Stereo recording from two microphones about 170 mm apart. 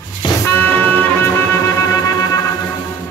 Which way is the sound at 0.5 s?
10° left (ahead or behind).